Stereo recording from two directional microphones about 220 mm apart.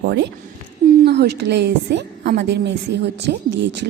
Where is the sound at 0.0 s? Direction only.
50° right (ahead or behind).